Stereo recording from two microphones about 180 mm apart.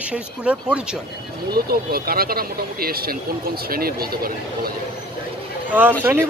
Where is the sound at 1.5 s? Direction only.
55° right (ahead or behind).